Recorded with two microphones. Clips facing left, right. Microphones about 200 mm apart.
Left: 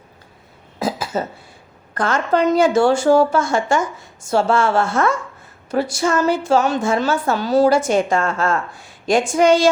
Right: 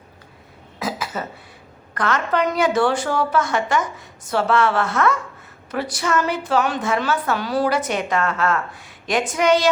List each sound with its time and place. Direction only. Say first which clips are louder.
0.8 s cough: left 5 dB; 30° left (ahead or behind)
2.0 s speech: left 3 dB; 30° left (ahead or behind)